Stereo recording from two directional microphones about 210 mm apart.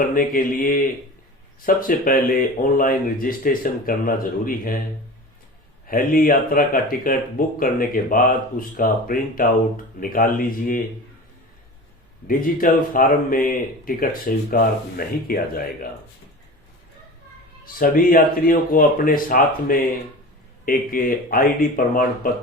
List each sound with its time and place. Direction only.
0.1 s speech: 40° left (ahead or behind)
5.9 s speech: 40° left (ahead or behind)
12.3 s speech: 40° left (ahead or behind)
17.7 s speech: 40° left (ahead or behind)